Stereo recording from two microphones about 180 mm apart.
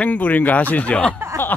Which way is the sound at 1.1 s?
15° right (ahead or behind).